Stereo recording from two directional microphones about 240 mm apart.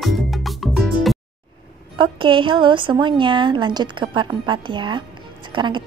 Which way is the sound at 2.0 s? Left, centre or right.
Right.